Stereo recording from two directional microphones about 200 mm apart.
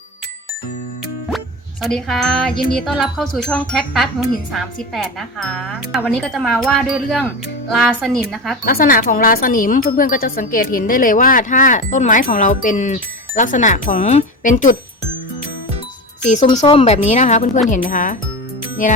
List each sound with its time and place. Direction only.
1.8 s speech: centre (ahead or behind)
8.6 s speech: 45° left (ahead or behind)
16.2 s speech: 35° left (ahead or behind)